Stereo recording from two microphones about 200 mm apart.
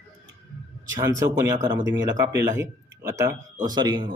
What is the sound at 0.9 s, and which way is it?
Speech, 15° right (ahead or behind).